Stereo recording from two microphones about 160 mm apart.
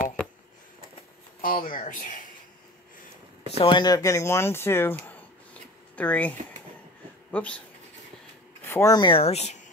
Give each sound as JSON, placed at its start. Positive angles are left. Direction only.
{"t": 1.4, "sound": "speech", "side_deg": 60}
{"t": 3.6, "sound": "speech", "side_deg": 25}
{"t": 8.6, "sound": "a sound", "side_deg": 15}
{"t": 8.9, "sound": "speech", "side_deg": 30}